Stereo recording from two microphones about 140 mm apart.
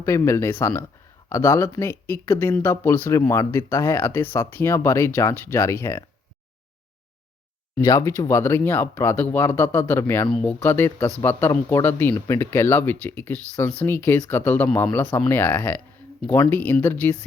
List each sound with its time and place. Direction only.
0.0 s speech: 20° left (ahead or behind)
7.8 s speech: 20° left (ahead or behind)